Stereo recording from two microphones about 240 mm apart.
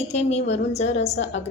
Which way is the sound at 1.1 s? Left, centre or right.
Left.